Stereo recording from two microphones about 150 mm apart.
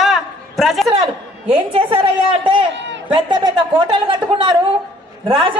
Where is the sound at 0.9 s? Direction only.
35° right (ahead or behind).